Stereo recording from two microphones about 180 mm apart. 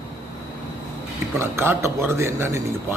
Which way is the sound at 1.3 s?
15° right (ahead or behind).